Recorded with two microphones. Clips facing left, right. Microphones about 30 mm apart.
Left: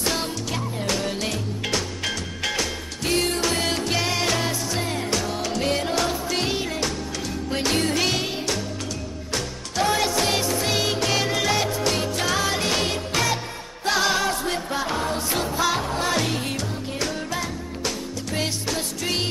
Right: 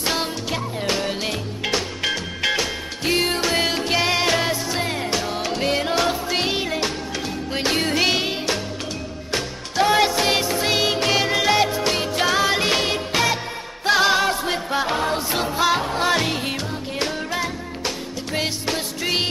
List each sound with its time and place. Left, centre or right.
0.0 s music: right